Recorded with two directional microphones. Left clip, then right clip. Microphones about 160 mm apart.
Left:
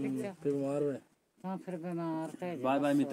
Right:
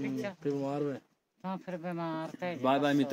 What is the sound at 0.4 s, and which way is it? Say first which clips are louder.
Speech: left 2 dB; centre (ahead or behind).